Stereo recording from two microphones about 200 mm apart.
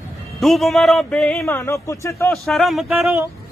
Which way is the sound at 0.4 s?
Centre (ahead or behind).